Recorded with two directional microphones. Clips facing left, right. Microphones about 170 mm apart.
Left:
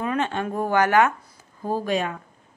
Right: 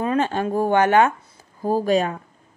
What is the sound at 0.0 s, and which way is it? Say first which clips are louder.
A woman's voice: right 4 dB; 35° right (ahead or behind).